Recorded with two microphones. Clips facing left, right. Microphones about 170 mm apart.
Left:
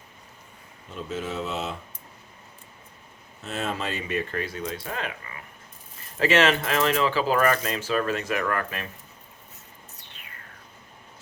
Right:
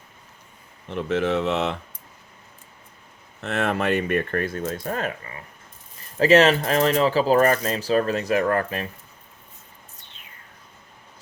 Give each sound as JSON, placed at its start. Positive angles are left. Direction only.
{"t": 0.9, "sound": "speech", "side_deg": -70}
{"t": 3.4, "sound": "speech", "side_deg": -65}